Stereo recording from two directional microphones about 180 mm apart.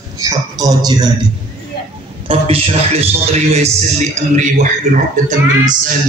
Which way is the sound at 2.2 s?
30° right (ahead or behind).